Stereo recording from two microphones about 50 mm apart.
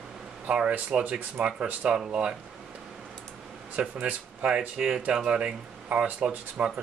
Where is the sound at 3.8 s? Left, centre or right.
Centre.